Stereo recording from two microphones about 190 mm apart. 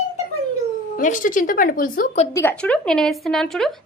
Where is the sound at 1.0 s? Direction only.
45° left (ahead or behind).